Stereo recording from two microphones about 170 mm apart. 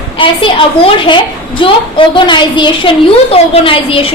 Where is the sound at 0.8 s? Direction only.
30° left (ahead or behind).